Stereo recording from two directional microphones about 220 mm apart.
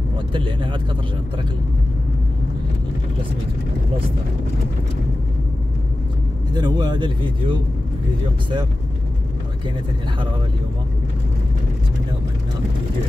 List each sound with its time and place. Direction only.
0.3 s a man's voice: 20° right (ahead or behind)
6.5 s a man's voice: 20° right (ahead or behind)